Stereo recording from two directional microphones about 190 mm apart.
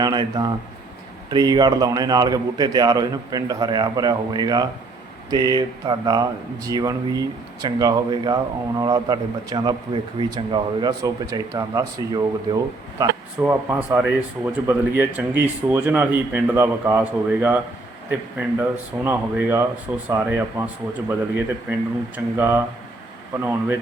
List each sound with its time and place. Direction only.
0.0 s a man's voice: 20° right (ahead or behind)